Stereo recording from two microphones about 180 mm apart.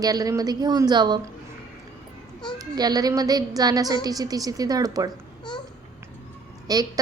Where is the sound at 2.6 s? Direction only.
20° right (ahead or behind).